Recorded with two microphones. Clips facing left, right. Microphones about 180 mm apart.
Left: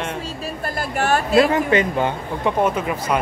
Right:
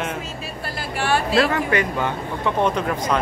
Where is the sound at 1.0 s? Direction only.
45° left (ahead or behind).